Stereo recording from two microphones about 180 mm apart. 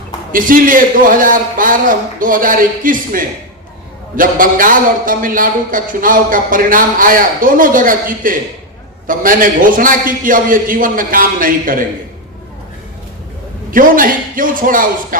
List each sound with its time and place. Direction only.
0.3 s a man's voice: 50° right (ahead or behind)
13.7 s a man's voice: 50° right (ahead or behind)